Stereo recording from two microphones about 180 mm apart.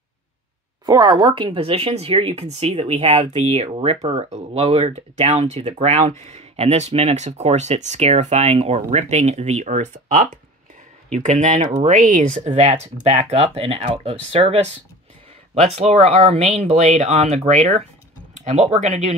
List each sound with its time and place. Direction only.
0.8 s speech: 25° right (ahead or behind)